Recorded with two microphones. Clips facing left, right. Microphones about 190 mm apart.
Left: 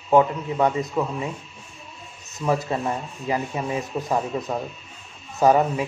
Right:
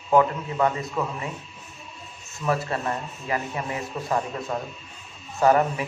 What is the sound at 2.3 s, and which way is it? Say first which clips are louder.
A man's voice: left 2 dB; 15° left (ahead or behind).